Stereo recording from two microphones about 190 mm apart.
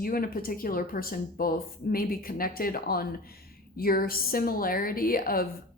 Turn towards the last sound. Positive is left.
turn(degrees=50)  # may be behind; listen again after turning